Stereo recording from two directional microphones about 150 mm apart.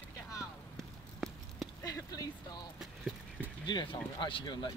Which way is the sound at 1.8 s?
25° left (ahead or behind).